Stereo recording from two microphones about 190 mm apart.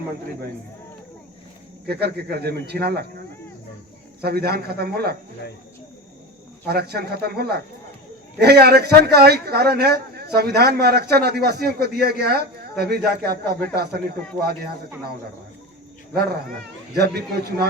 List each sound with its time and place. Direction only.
1.9 s a man's voice: 60° right (ahead or behind)
6.7 s a man's voice: 55° right (ahead or behind)
16.1 s a man's voice: 55° right (ahead or behind)